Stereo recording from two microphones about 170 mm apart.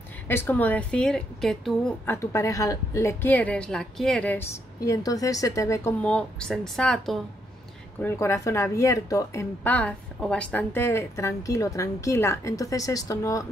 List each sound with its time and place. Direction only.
0.3 s a woman's voice: 15° left (ahead or behind)
2.0 s speech: 15° left (ahead or behind)
6.0 s a woman's voice: 5° left (ahead or behind)
8.0 s speech: 15° left (ahead or behind)